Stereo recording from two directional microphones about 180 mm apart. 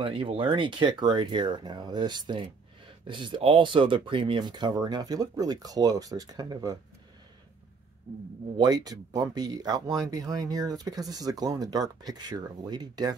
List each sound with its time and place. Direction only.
0.0 s speech: 30° right (ahead or behind)
8.5 s speech: 25° right (ahead or behind)